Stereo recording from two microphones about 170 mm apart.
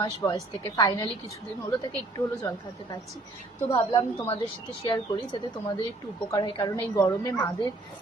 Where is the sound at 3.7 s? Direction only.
30° left (ahead or behind).